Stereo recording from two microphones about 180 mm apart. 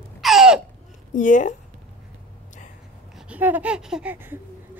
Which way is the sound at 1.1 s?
45° left (ahead or behind).